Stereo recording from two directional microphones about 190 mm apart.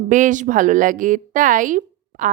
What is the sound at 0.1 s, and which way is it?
A woman's voice, 40° right (ahead or behind).